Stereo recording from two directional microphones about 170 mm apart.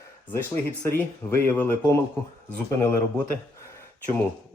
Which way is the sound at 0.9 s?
15° left (ahead or behind).